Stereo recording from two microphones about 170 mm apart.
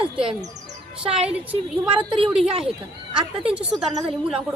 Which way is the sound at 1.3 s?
5° right (ahead or behind).